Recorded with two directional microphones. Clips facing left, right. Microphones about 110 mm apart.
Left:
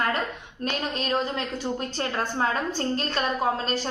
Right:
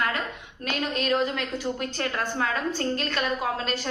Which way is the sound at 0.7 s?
30° left (ahead or behind).